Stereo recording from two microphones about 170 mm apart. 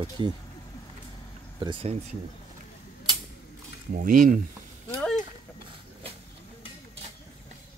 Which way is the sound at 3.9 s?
55° right (ahead or behind).